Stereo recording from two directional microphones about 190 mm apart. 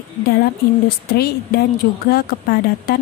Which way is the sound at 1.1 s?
55° left (ahead or behind).